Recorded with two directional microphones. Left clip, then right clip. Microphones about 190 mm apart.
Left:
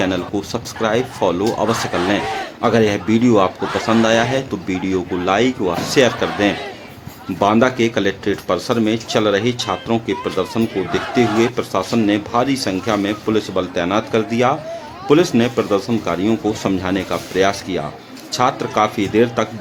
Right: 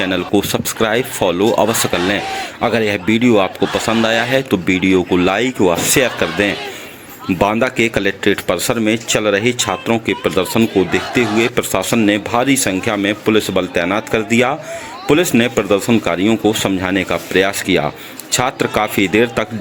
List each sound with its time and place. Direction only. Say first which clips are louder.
0.0 s speech: right 4 dB; 25° right (ahead or behind)